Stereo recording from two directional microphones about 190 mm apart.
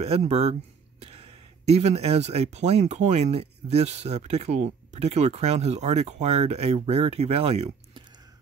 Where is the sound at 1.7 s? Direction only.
35° right (ahead or behind).